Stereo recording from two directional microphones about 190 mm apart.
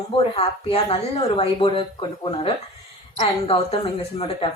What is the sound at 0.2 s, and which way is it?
A woman's voice, 30° left (ahead or behind).